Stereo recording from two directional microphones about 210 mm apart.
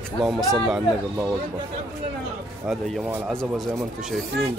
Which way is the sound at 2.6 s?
5° right (ahead or behind).